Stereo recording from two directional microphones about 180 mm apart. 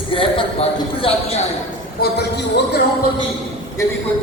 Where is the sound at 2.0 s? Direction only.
55° left (ahead or behind).